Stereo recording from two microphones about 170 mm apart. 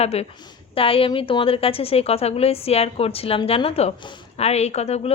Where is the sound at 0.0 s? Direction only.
40° left (ahead or behind).